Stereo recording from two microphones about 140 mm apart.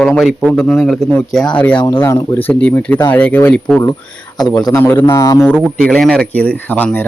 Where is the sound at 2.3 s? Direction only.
10° left (ahead or behind).